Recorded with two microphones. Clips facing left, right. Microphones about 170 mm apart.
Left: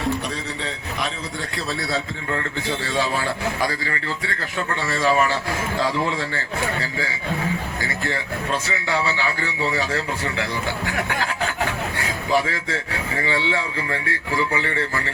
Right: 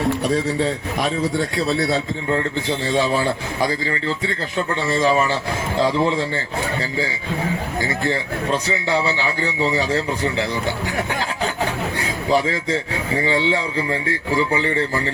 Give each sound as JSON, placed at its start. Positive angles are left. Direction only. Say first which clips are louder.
{"t": 2.8, "sound": "speech", "louder": "right 5 dB", "side_deg": -25}
{"t": 7.8, "sound": "speech", "louder": "right 5 dB", "side_deg": -20}
{"t": 11.9, "sound": "a man's voice", "louder": "right 2 dB", "side_deg": -20}